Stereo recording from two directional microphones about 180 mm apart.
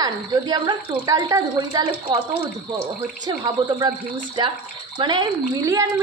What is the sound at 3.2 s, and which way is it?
A woman's voice, 25° right (ahead or behind).